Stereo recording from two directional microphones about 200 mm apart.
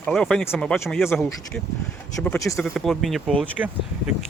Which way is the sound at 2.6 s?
Centre (ahead or behind).